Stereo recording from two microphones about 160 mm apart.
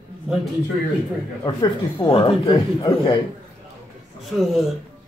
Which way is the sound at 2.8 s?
20° left (ahead or behind).